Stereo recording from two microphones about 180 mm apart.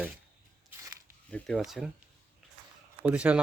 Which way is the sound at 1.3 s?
Centre (ahead or behind).